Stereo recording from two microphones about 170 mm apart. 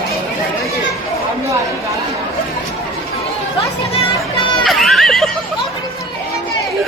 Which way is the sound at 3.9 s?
30° left (ahead or behind).